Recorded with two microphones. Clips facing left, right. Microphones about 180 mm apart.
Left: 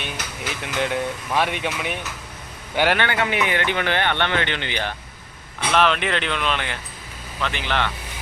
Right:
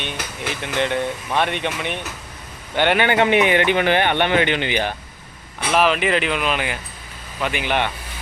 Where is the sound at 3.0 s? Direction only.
20° right (ahead or behind).